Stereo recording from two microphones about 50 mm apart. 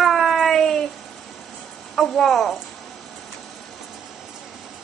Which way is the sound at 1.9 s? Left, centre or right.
Centre.